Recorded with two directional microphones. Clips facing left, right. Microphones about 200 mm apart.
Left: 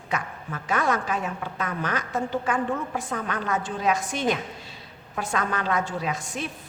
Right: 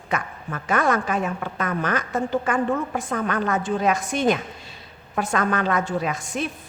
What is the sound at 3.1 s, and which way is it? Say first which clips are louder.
A woman's voice: right 5 dB; 55° right (ahead or behind).